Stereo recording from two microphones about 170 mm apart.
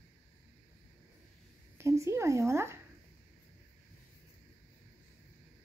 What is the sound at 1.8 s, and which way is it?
Speech, 15° right (ahead or behind).